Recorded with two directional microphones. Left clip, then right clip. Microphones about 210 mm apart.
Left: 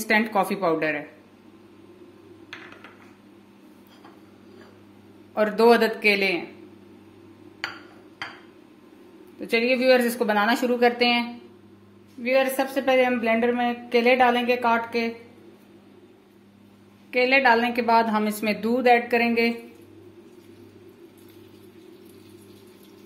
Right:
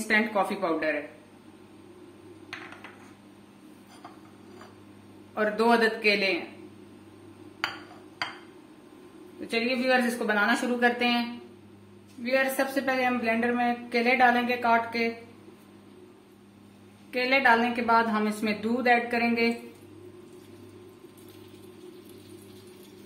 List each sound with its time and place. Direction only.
0.1 s a woman's voice: 40° left (ahead or behind)
5.3 s a woman's voice: 40° left (ahead or behind)
9.5 s a woman's voice: 40° left (ahead or behind)
17.1 s a woman's voice: 25° left (ahead or behind)